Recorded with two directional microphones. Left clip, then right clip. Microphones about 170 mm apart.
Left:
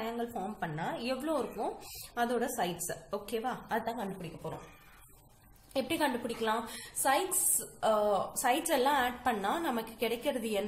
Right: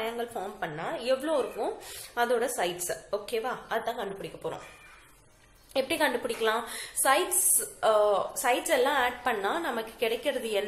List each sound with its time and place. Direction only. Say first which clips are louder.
0.0 s a woman's voice: right 4 dB; 20° left (ahead or behind)
5.7 s a woman's voice: right 5 dB; 20° left (ahead or behind)